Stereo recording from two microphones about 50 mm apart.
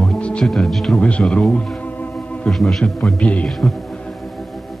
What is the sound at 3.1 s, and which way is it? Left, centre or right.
Speech, left.